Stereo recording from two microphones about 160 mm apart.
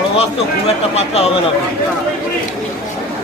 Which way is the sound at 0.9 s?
40° left (ahead or behind).